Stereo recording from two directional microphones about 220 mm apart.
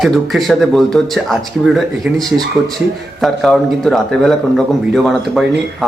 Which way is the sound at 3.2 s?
Centre (ahead or behind).